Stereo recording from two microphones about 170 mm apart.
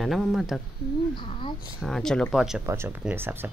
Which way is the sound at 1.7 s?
Centre (ahead or behind).